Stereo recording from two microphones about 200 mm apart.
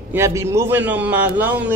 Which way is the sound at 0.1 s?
15° right (ahead or behind).